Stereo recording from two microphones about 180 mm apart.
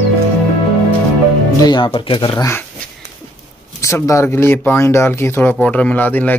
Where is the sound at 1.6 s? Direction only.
25° left (ahead or behind).